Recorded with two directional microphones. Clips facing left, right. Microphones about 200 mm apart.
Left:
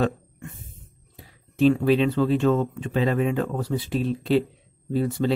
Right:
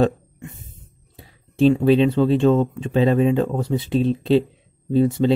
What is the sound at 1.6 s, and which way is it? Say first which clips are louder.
Speech: right 4 dB; 30° right (ahead or behind).